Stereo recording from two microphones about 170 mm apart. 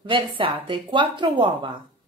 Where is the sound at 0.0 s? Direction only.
30° right (ahead or behind).